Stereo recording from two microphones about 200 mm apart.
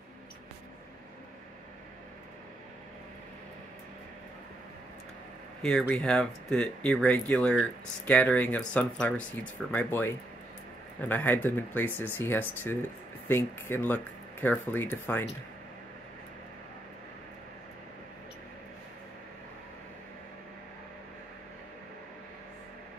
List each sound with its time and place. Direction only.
5.6 s speech: 5° left (ahead or behind)